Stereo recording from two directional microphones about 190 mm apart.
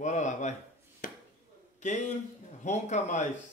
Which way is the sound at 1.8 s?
40° left (ahead or behind).